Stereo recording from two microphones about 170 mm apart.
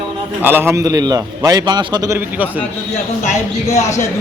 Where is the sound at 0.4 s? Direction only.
10° right (ahead or behind).